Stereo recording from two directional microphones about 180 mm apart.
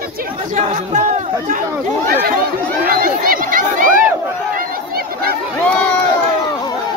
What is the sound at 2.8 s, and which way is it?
Crowd, 55° right (ahead or behind).